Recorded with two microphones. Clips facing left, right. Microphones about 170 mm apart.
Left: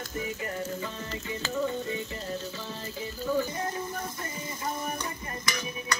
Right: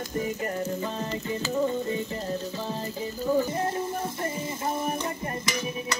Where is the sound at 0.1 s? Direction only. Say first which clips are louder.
Right 5 dB; 40° right (ahead or behind).